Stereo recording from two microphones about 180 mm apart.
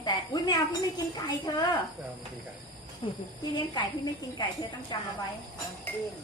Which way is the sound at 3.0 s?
25° left (ahead or behind).